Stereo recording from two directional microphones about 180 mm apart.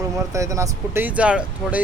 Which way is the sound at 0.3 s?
15° right (ahead or behind).